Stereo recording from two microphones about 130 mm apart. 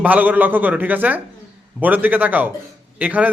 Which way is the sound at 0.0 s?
15° right (ahead or behind).